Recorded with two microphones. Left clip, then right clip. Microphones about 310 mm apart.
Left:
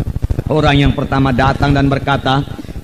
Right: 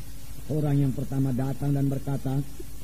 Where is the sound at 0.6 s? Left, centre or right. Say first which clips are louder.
Left 16 dB; right.